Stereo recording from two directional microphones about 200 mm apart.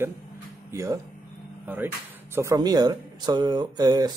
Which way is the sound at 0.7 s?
15° right (ahead or behind).